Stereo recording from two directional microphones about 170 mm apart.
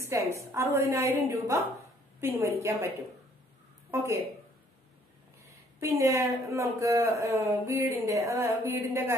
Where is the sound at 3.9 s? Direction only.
15° right (ahead or behind).